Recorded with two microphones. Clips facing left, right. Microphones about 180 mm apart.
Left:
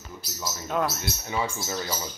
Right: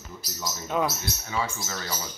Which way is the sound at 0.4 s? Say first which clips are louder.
Even; centre (ahead or behind).